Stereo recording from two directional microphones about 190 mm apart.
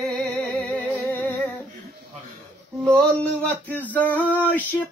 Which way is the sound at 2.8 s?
5° left (ahead or behind).